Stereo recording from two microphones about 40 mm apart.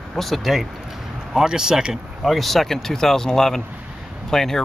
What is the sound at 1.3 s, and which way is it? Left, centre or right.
Speech, centre.